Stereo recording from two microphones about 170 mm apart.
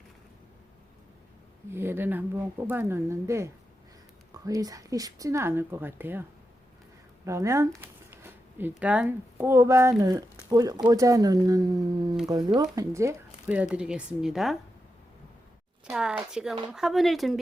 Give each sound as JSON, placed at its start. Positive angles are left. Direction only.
{"t": 1.7, "sound": "speech", "side_deg": -15}
{"t": 7.3, "sound": "speech", "side_deg": -15}
{"t": 7.8, "sound": "a sound", "side_deg": -15}
{"t": 8.8, "sound": "speech", "side_deg": -10}
{"t": 15.9, "sound": "a woman's voice", "side_deg": -5}